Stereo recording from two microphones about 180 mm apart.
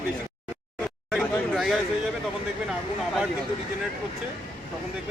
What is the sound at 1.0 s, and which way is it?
Speech, centre (ahead or behind).